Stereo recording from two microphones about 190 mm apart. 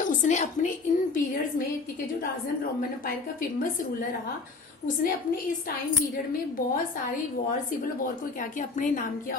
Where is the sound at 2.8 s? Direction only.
50° left (ahead or behind).